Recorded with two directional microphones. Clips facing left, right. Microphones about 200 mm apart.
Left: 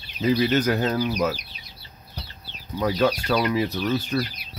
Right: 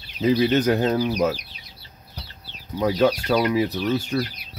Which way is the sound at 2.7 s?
20° right (ahead or behind).